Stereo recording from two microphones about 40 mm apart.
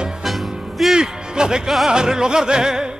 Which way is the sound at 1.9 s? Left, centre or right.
Centre.